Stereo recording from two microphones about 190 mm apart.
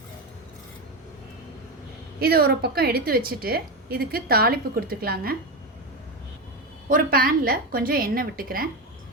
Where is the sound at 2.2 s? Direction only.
55° right (ahead or behind).